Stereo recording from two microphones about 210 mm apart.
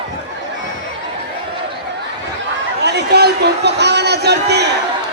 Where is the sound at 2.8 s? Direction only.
50° right (ahead or behind).